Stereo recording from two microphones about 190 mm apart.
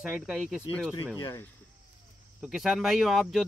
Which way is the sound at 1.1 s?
15° left (ahead or behind).